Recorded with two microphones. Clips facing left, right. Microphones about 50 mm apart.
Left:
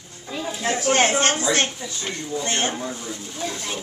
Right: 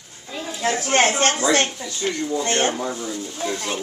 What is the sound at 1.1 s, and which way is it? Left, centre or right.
Speech, left.